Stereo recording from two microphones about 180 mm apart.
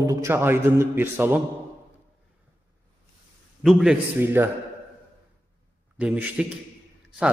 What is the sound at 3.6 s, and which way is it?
Speech, 5° right (ahead or behind).